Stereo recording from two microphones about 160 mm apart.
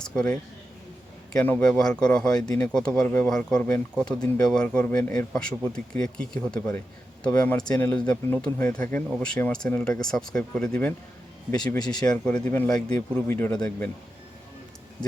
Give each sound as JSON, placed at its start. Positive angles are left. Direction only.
{"t": 0.1, "sound": "speech", "side_deg": 5}
{"t": 1.4, "sound": "speech", "side_deg": 10}
{"t": 7.2, "sound": "speech", "side_deg": 20}
{"t": 7.5, "sound": "speech", "side_deg": 5}
{"t": 12.0, "sound": "speech", "side_deg": 5}